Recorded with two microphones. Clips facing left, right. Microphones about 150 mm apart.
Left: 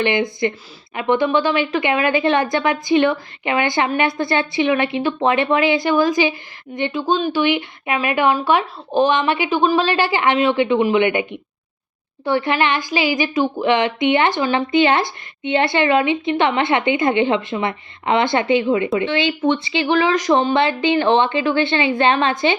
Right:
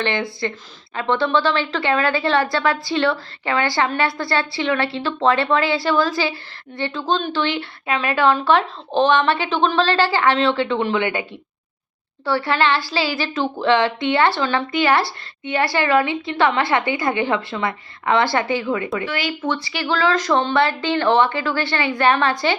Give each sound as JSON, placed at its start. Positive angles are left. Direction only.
{"t": 0.0, "sound": "a woman's voice", "side_deg": 20}